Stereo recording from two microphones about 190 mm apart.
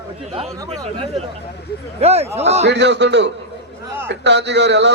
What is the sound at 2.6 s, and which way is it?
A man's voice, 65° right (ahead or behind).